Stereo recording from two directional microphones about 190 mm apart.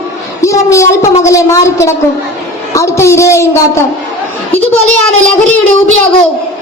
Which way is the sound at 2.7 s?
15° left (ahead or behind).